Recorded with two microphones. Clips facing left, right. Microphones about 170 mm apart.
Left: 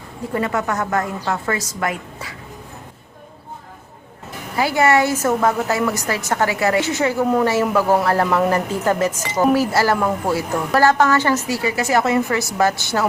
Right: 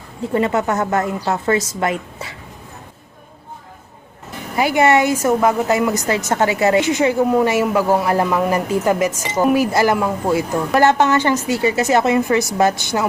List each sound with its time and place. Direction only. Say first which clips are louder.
0.3 s a woman's voice: right 4 dB; 25° right (ahead or behind)
4.5 s a woman's voice: right 2 dB; 20° right (ahead or behind)